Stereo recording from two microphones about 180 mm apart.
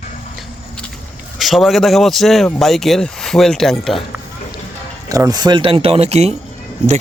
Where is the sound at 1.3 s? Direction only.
Centre (ahead or behind).